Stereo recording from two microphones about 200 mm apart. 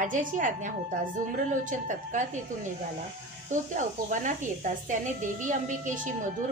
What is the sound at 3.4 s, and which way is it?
A woman's voice, 40° right (ahead or behind).